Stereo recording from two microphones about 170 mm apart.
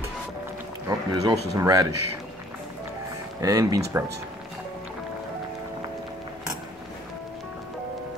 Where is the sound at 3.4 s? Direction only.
20° right (ahead or behind).